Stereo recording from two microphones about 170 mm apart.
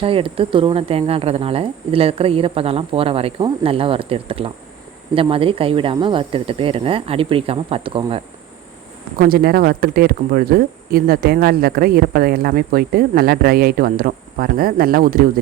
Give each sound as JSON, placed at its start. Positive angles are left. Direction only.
{"t": 0.0, "sound": "speech", "side_deg": -30}
{"t": 9.1, "sound": "speech", "side_deg": -60}